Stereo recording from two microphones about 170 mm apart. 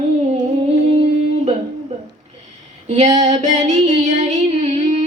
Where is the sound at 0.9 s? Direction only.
40° right (ahead or behind).